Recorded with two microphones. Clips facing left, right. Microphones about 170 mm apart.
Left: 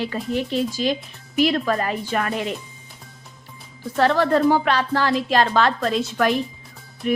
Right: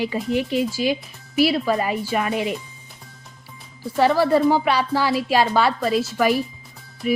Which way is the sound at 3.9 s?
10° right (ahead or behind).